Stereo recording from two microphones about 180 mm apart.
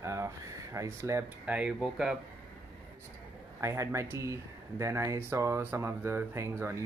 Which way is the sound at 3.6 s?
15° right (ahead or behind).